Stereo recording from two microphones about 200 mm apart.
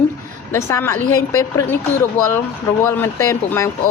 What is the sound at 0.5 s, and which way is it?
A woman's voice, 15° left (ahead or behind).